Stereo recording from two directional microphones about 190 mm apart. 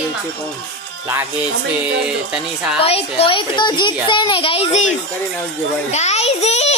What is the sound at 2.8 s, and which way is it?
A woman's voice, 30° left (ahead or behind).